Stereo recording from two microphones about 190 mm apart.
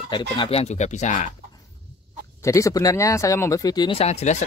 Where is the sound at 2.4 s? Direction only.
15° left (ahead or behind).